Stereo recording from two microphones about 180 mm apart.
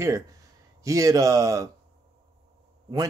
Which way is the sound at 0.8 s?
20° right (ahead or behind).